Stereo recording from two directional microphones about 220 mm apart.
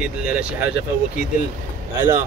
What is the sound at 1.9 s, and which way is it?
Speech, 20° right (ahead or behind).